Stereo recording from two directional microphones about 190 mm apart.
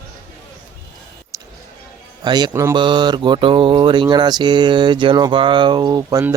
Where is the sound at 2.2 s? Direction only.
20° right (ahead or behind).